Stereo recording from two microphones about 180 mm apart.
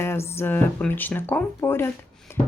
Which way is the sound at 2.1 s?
5° left (ahead or behind).